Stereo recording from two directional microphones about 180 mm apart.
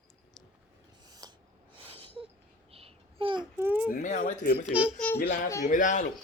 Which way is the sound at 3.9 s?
45° left (ahead or behind).